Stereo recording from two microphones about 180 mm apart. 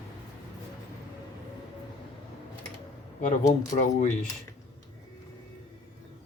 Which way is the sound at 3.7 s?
45° left (ahead or behind).